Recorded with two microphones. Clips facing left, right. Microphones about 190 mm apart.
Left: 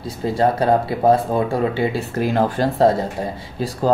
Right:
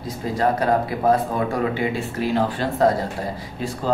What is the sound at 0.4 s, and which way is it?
Speech, 30° left (ahead or behind).